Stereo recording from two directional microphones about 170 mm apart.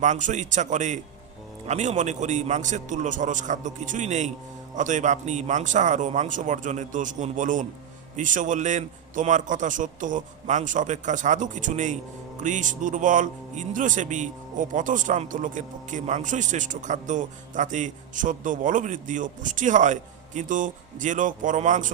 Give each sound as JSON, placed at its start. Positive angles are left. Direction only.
{"t": 0.0, "sound": "a man's voice", "side_deg": -45}